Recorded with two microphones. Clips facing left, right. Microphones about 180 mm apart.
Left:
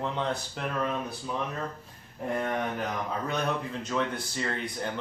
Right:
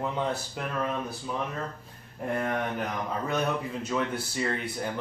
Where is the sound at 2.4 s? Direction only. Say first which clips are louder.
Right 1 dB; centre (ahead or behind).